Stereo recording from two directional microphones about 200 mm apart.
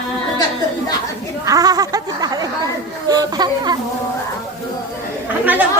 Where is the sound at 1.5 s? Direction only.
20° right (ahead or behind).